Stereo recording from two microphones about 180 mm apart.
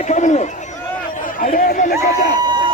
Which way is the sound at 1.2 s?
50° left (ahead or behind).